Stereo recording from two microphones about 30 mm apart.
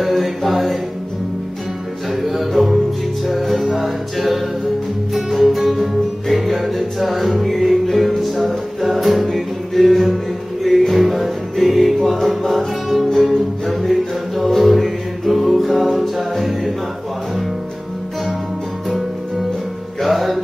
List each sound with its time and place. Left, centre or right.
0.0 s mantra: centre
2.2 s music: centre
20.0 s music: centre